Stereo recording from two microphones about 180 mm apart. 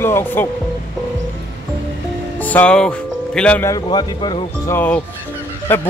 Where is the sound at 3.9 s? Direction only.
25° left (ahead or behind).